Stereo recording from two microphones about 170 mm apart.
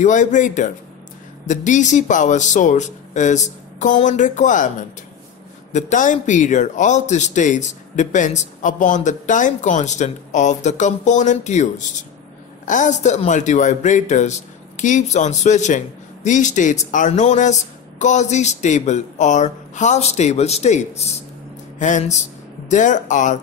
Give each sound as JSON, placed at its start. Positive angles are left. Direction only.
{"t": 0.0, "sound": "a man's voice", "side_deg": 50}